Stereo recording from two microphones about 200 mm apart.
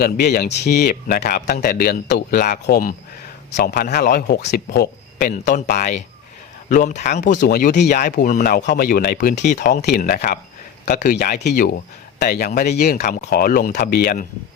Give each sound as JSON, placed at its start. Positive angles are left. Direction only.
{"t": 0.0, "sound": "a man's voice", "side_deg": 50}
{"t": 5.3, "sound": "speech", "side_deg": 40}